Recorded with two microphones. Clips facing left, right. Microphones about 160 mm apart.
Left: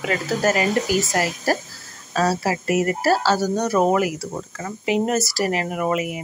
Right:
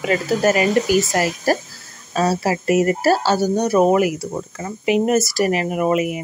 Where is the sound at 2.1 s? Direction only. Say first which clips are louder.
Right 2 dB; 20° right (ahead or behind).